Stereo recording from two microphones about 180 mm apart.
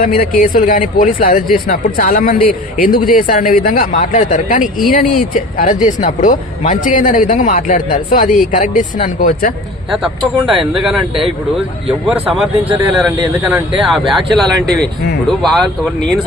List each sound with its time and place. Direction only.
0.0 s speech: 50° left (ahead or behind)
9.9 s speech: centre (ahead or behind)